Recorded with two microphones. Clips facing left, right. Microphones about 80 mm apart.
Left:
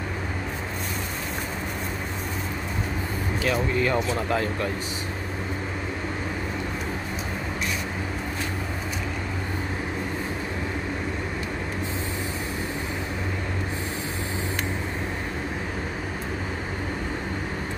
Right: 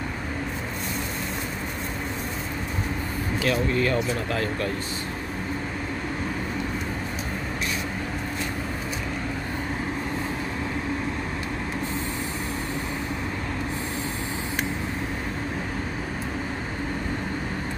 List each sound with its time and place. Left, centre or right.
3.4 s speech: centre